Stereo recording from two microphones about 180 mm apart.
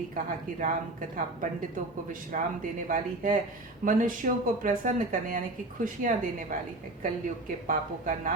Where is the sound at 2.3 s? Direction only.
50° right (ahead or behind).